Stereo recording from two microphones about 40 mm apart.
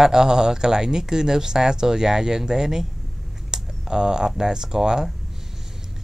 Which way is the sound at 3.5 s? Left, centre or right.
Centre.